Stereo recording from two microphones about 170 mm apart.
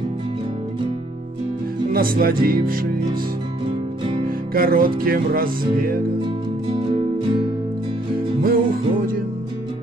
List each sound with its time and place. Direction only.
1.9 s music: 60° right (ahead or behind)
4.6 s music: 60° right (ahead or behind)
6.7 s music: 30° right (ahead or behind)
8.4 s music: 55° right (ahead or behind)